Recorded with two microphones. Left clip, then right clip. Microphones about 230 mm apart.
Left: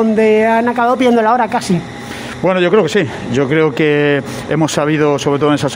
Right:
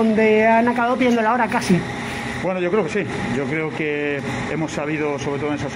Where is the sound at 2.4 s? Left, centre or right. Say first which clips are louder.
Left 10 dB; left.